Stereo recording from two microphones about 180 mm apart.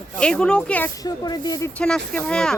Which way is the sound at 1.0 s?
20° left (ahead or behind).